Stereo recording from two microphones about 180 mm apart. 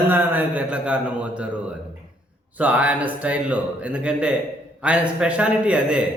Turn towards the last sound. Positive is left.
turn(degrees=-5)  # may be behind; listen again after turning